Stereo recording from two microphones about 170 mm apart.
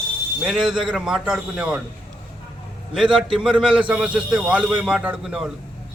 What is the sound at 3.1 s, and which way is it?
Speech, 30° right (ahead or behind).